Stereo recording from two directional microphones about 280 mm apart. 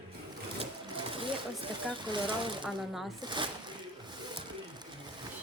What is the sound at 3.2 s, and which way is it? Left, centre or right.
Speech, centre.